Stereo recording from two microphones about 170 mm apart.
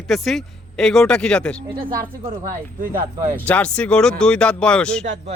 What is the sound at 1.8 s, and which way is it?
Speech, 50° right (ahead or behind).